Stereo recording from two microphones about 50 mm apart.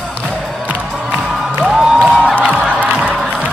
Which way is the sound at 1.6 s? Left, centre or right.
Centre.